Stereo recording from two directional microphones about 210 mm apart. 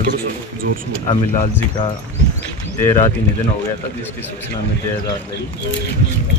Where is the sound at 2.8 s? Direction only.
15° left (ahead or behind).